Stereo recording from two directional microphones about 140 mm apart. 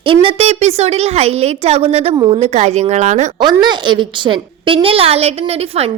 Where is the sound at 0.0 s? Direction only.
40° right (ahead or behind).